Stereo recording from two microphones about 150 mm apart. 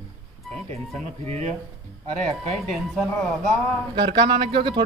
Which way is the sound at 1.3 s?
45° right (ahead or behind).